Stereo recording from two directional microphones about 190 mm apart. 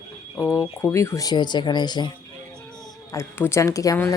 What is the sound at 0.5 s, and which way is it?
Speech, 15° left (ahead or behind).